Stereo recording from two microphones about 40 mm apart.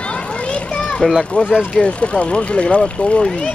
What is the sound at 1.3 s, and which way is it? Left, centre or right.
Speech, left.